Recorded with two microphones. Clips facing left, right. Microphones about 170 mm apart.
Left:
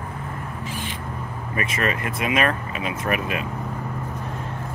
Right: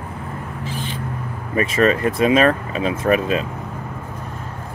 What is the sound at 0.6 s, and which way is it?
Owl, 30° right (ahead or behind).